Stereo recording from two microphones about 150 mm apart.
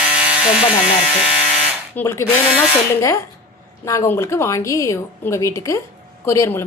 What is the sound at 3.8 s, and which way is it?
A woman's voice, 20° left (ahead or behind).